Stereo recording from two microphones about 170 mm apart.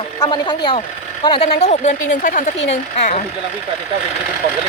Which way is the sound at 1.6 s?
45° left (ahead or behind).